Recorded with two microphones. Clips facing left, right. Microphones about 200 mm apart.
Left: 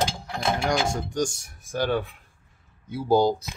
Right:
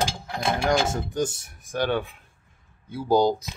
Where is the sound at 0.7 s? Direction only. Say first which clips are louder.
Right 2 dB; 5° right (ahead or behind).